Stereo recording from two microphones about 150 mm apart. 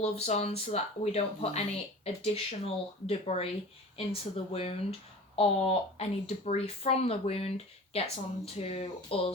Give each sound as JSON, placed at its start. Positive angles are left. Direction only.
{"t": 0.0, "sound": "speech", "side_deg": 45}